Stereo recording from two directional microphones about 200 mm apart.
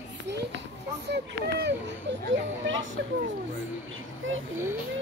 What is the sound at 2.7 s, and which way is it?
Speech, 70° right (ahead or behind).